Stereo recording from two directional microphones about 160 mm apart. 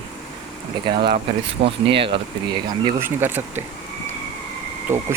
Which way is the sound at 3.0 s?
15° right (ahead or behind).